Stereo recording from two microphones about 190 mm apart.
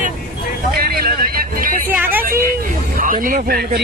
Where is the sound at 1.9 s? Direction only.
10° right (ahead or behind).